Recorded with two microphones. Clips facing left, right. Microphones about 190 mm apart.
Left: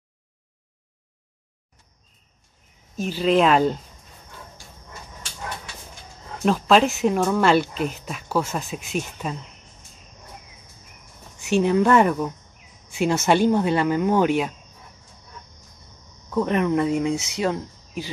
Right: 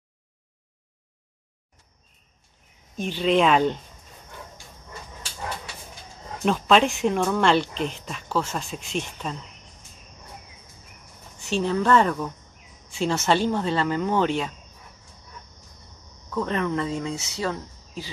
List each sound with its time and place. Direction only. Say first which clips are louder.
3.0 s speech: left 2 dB; 5° left (ahead or behind)
6.4 s speech: left 2 dB; centre (ahead or behind)
11.4 s speech: left 4 dB; 10° left (ahead or behind)
16.3 s speech: left 4 dB; 15° left (ahead or behind)